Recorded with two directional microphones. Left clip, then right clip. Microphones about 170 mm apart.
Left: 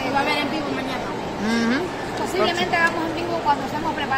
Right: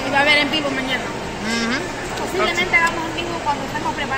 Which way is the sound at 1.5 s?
30° left (ahead or behind).